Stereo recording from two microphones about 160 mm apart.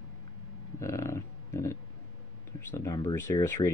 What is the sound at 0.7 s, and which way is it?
Speech, 20° left (ahead or behind).